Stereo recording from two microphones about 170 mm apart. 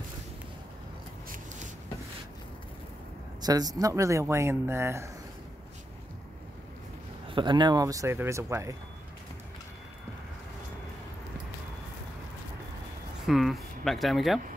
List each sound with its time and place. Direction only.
3.4 s speech: 20° right (ahead or behind)
7.2 s speech: 30° right (ahead or behind)
13.3 s speech: centre (ahead or behind)